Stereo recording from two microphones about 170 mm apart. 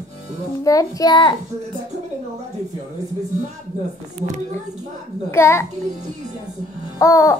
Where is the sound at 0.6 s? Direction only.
20° left (ahead or behind).